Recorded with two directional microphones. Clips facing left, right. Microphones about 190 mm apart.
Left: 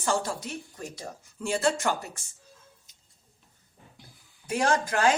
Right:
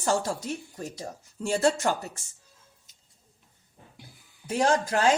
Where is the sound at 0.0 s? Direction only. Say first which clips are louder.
Right 2 dB; 40° right (ahead or behind).